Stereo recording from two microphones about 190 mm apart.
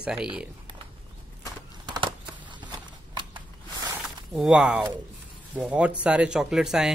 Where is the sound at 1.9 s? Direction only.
25° right (ahead or behind).